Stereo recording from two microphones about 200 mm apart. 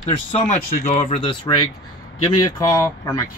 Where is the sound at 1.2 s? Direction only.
25° left (ahead or behind).